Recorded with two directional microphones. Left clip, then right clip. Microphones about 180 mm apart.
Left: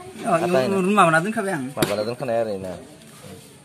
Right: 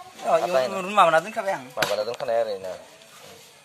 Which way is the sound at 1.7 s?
5° left (ahead or behind).